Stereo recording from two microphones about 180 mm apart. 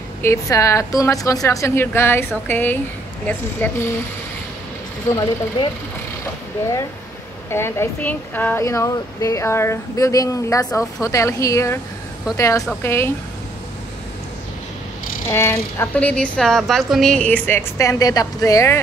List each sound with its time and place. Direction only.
0.2 s speech: 15° left (ahead or behind)
5.1 s speech: 25° left (ahead or behind)
7.5 s speech: 15° left (ahead or behind)
15.2 s speech: 15° left (ahead or behind)